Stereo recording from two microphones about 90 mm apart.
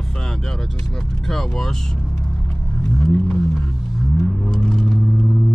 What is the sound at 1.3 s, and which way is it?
Speech, 5° left (ahead or behind).